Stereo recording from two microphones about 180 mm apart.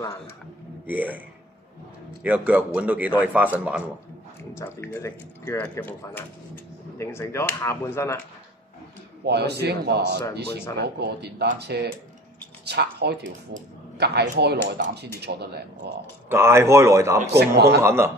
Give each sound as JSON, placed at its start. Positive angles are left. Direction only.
{"t": 0.8, "sound": "a man's voice", "side_deg": -10}
{"t": 2.2, "sound": "a man's voice", "side_deg": -10}
{"t": 4.6, "sound": "speech", "side_deg": 15}
{"t": 9.2, "sound": "a man's voice", "side_deg": -65}
{"t": 16.3, "sound": "a man's voice", "side_deg": -15}